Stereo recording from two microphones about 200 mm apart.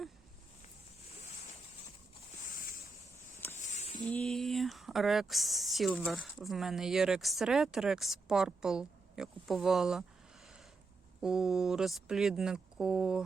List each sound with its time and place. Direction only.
3.7 s a sound: 30° left (ahead or behind)
4.1 s speech: centre (ahead or behind)
11.2 s speech: 5° right (ahead or behind)